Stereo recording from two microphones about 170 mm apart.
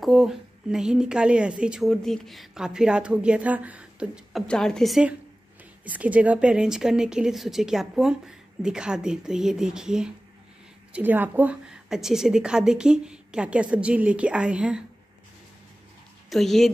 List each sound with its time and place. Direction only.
0.0 s a woman's voice: centre (ahead or behind)
16.3 s a woman's voice: centre (ahead or behind)